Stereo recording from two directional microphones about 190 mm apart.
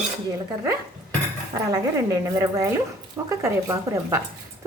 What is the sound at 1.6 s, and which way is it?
A woman's voice, 15° right (ahead or behind).